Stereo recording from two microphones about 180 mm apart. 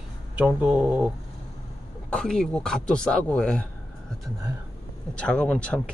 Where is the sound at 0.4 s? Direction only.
10° right (ahead or behind).